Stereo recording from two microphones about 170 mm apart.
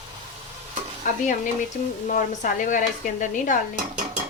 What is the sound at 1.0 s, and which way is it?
A woman's voice, 50° left (ahead or behind).